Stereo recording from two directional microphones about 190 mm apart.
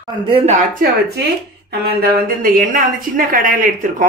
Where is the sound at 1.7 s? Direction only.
60° right (ahead or behind).